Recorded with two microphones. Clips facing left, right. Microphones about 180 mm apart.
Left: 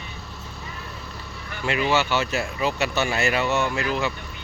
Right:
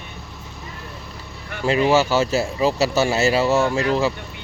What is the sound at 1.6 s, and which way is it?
Speech, 35° right (ahead or behind).